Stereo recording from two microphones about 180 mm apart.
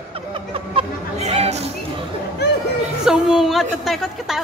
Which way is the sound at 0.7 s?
35° right (ahead or behind).